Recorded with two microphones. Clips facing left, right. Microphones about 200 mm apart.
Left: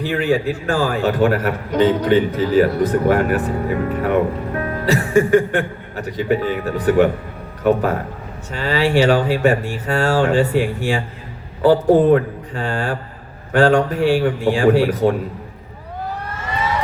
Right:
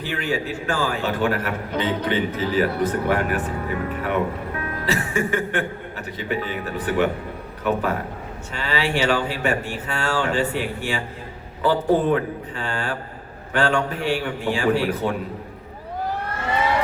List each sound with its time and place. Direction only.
0.1 s a man's voice: 35° left (ahead or behind)